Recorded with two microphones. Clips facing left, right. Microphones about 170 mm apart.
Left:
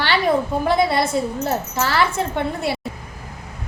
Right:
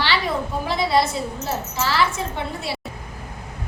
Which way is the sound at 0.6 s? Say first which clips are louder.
Even; 55° left (ahead or behind).